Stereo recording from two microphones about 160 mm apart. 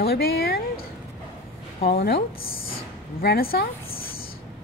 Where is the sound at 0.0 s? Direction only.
75° left (ahead or behind).